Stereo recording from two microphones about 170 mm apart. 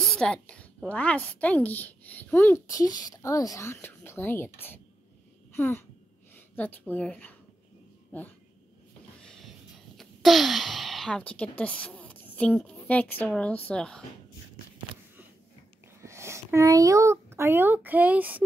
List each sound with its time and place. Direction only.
0.0 s a woman's voice: 5° left (ahead or behind)
9.2 s music: 5° left (ahead or behind)
9.9 s a woman's voice: centre (ahead or behind)
16.0 s speech: 15° right (ahead or behind)